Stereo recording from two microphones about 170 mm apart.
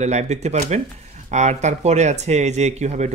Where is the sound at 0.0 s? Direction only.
40° right (ahead or behind).